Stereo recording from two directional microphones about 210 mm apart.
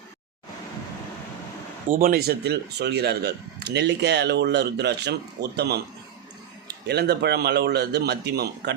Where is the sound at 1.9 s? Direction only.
40° right (ahead or behind).